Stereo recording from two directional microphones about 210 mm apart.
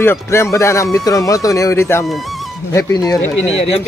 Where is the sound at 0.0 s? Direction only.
10° left (ahead or behind).